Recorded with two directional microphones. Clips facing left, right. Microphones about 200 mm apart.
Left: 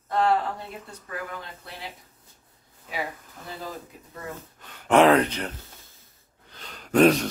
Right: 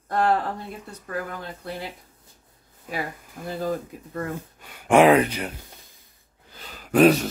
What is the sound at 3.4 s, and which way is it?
Speech, 55° right (ahead or behind).